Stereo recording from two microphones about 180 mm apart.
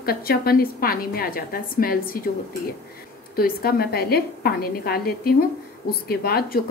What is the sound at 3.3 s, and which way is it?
A woman's voice, 55° left (ahead or behind).